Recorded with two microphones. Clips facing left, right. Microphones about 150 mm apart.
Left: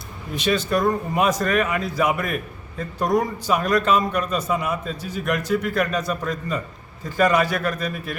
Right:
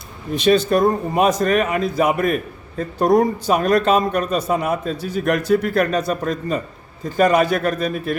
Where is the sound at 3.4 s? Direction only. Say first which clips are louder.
Right 4 dB; 50° right (ahead or behind).